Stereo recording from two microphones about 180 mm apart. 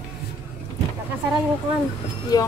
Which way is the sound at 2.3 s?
20° left (ahead or behind).